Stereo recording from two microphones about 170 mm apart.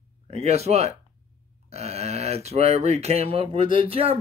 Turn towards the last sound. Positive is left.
turn(degrees=-35)  # may be behind; listen again after turning